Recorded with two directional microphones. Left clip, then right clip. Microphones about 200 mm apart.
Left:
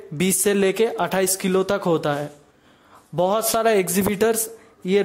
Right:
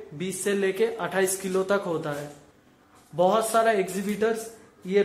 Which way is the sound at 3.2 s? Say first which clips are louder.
Left 1 dB; 40° left (ahead or behind).